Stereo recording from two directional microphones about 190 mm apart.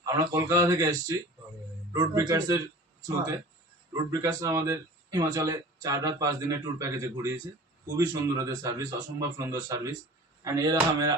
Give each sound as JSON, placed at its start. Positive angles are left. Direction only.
{"t": 0.0, "sound": "speech", "side_deg": -15}
{"t": 3.9, "sound": "speech", "side_deg": -15}